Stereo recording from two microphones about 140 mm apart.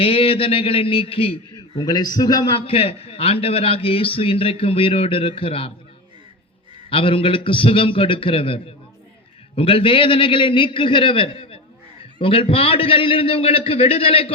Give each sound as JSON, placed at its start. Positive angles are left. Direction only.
{"t": 0.0, "sound": "a man's voice", "side_deg": 40}
{"t": 6.9, "sound": "a man's voice", "side_deg": 40}